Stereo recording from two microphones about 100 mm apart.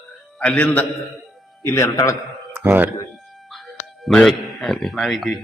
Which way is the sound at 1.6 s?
30° left (ahead or behind).